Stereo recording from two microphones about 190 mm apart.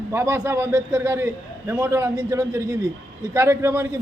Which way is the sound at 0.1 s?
15° right (ahead or behind).